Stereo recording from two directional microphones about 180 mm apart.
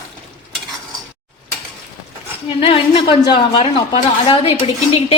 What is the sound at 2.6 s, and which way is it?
A woman's voice, 30° left (ahead or behind).